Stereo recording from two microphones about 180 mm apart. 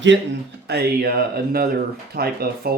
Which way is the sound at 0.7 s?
60° right (ahead or behind).